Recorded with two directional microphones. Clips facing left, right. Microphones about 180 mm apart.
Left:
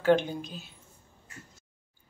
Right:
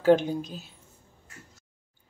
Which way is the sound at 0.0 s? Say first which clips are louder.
Right 3 dB; 40° right (ahead or behind).